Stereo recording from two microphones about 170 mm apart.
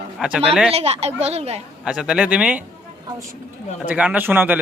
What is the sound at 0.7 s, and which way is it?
Speech, 35° right (ahead or behind).